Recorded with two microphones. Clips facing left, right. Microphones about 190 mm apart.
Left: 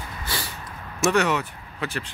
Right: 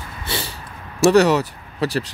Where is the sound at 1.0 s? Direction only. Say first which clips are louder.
Right 8 dB; 35° right (ahead or behind).